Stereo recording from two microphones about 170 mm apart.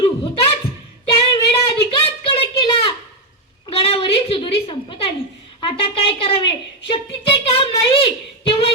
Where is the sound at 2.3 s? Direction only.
30° left (ahead or behind).